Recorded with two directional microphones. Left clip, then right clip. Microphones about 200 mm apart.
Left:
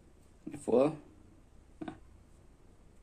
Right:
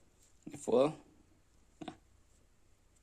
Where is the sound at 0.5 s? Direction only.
40° right (ahead or behind).